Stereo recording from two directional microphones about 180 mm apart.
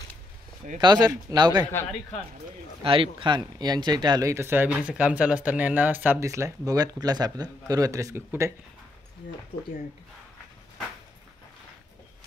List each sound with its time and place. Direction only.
0.7 s speech: 25° right (ahead or behind)
2.8 s speech: 30° right (ahead or behind)